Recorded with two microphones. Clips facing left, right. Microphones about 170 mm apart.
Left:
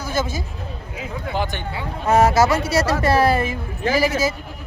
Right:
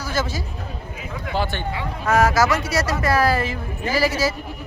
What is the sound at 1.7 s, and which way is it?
Speech, 25° left (ahead or behind).